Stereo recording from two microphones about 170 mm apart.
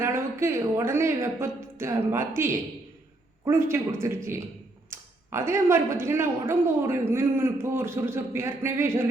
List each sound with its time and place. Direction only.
0.0 s a woman's voice: 15° right (ahead or behind)